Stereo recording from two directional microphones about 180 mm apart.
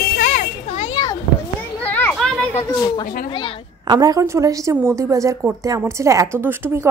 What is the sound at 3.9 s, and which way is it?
Speech, 20° right (ahead or behind).